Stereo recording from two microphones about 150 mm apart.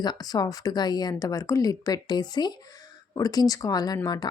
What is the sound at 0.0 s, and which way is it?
Speech, 25° left (ahead or behind).